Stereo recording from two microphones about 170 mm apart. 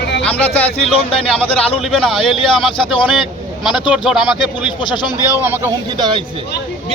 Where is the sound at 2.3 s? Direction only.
30° left (ahead or behind).